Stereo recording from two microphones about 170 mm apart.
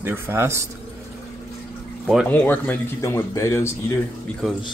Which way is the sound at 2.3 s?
10° left (ahead or behind).